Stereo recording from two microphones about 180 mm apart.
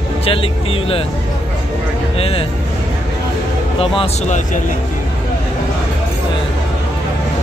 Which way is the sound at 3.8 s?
35° left (ahead or behind).